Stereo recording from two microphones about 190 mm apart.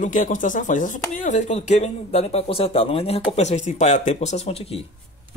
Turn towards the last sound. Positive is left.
turn(degrees=30)  # may be behind; listen again after turning